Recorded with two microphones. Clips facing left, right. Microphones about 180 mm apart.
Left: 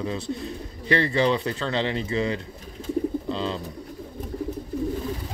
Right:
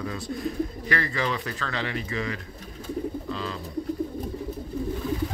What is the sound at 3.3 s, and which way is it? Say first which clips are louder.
Bird: left 4 dB; 30° left (ahead or behind).